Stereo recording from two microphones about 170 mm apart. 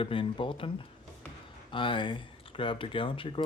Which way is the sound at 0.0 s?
30° left (ahead or behind).